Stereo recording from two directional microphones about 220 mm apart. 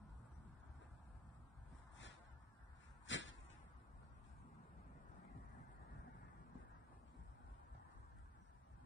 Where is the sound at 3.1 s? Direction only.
60° left (ahead or behind).